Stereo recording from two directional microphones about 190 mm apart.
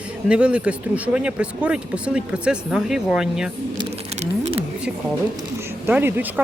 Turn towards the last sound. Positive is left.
turn(degrees=-10)  # may be behind; listen again after turning